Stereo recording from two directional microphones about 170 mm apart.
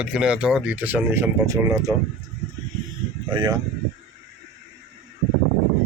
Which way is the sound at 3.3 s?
25° right (ahead or behind).